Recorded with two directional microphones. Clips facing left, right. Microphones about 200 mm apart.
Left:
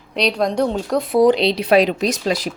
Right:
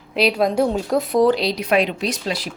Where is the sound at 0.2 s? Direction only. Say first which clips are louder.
Right 1 dB; 5° right (ahead or behind).